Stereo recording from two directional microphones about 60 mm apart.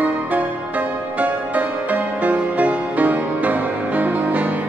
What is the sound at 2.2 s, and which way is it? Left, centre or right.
Music, right.